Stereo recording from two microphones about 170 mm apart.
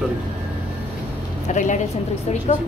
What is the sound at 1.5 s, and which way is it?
Speech, 45° left (ahead or behind).